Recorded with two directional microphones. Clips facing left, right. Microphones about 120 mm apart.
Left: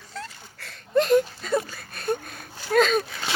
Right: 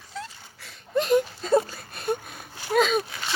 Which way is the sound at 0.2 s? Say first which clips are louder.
Even; 10° right (ahead or behind).